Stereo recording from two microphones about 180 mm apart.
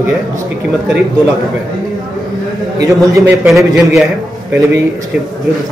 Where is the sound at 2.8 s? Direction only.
20° right (ahead or behind).